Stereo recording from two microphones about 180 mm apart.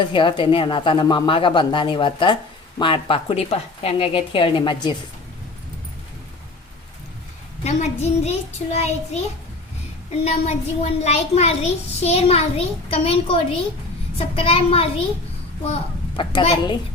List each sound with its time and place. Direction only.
0.0 s speech: 25° left (ahead or behind)
7.6 s a child's voice: 40° left (ahead or behind)
10.2 s a child's voice: 35° left (ahead or behind)